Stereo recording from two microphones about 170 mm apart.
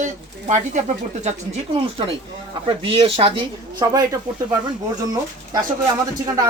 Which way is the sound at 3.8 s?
20° right (ahead or behind).